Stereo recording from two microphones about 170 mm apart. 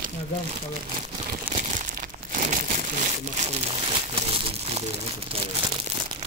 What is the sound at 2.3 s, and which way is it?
Crumpling, 45° right (ahead or behind).